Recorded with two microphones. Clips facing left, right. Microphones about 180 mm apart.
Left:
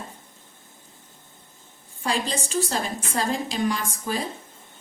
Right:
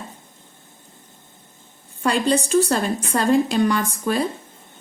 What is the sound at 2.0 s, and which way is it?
A woman's voice, 65° right (ahead or behind).